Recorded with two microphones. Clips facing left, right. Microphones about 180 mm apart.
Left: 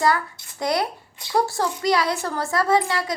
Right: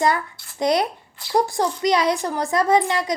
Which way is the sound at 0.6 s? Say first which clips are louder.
Right 3 dB; 20° right (ahead or behind).